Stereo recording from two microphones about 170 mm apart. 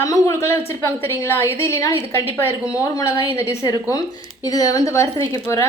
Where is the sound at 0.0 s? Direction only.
15° left (ahead or behind).